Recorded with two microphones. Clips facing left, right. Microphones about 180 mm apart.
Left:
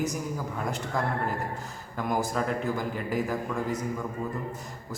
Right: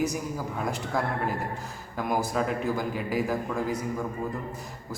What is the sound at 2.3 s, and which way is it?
A man's voice, 5° right (ahead or behind).